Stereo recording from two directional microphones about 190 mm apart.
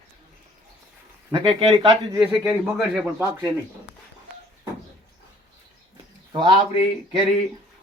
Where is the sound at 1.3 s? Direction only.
25° right (ahead or behind).